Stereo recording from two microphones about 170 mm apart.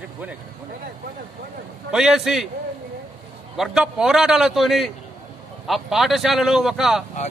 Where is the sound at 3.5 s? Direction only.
5° right (ahead or behind).